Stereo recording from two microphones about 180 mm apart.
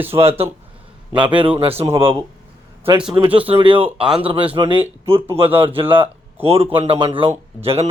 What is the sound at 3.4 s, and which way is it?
Speech, 30° right (ahead or behind).